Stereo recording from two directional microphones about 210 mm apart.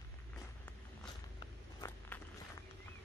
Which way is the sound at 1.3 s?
15° left (ahead or behind).